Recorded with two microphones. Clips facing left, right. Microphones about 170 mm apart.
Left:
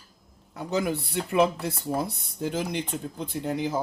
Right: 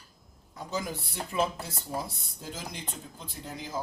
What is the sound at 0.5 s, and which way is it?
Speech, 65° left (ahead or behind).